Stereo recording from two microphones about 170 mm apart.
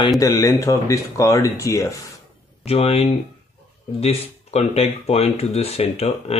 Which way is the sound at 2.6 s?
35° left (ahead or behind).